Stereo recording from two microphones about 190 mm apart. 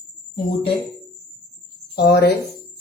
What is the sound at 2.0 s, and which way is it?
Speech, 60° left (ahead or behind).